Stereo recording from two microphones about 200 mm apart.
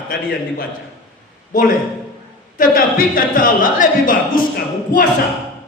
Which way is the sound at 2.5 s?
45° left (ahead or behind).